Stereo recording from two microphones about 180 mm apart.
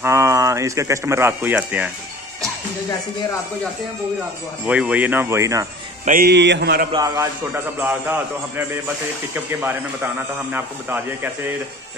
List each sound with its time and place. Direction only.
0.0 s a man's voice: 15° right (ahead or behind)
4.6 s a man's voice: 5° right (ahead or behind)
6.0 s speech: 50° right (ahead or behind)
6.3 s a man's voice: 75° right (ahead or behind)
6.9 s a man's voice: 20° right (ahead or behind)